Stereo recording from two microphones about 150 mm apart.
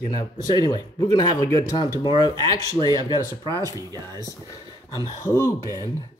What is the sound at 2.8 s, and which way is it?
Speech, 30° right (ahead or behind).